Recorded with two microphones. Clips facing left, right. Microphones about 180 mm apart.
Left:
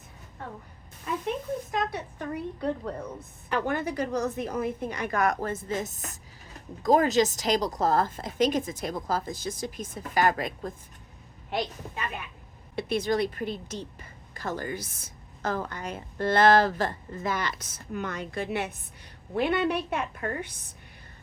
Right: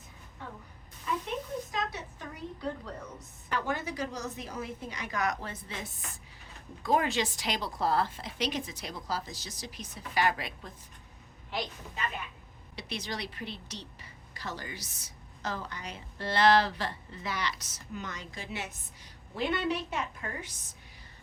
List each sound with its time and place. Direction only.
1.7 s a woman's voice: 55° left (ahead or behind)
12.7 s a woman's voice: 50° left (ahead or behind)